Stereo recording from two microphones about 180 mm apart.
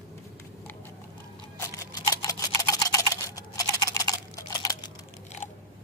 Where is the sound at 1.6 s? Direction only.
20° left (ahead or behind).